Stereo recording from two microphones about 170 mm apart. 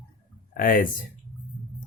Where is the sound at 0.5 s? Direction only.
55° left (ahead or behind).